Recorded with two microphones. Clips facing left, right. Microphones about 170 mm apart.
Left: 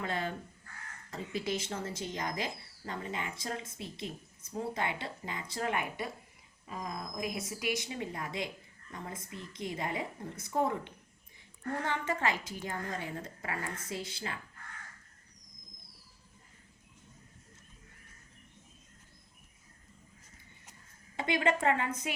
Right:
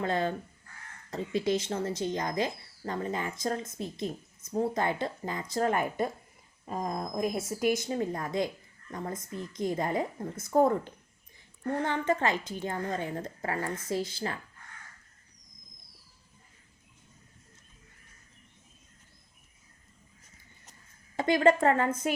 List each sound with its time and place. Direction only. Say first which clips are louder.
0.0 s a woman's voice: right 6 dB; 35° right (ahead or behind)
21.2 s speech: right 7 dB; 40° right (ahead or behind)